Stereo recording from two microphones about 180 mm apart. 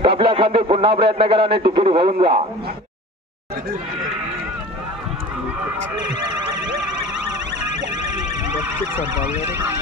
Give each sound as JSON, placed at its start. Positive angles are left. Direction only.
{"t": 0.0, "sound": "speech", "side_deg": -30}
{"t": 8.9, "sound": "speech", "side_deg": -10}